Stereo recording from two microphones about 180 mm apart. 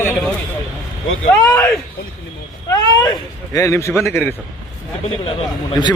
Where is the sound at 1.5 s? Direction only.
10° left (ahead or behind).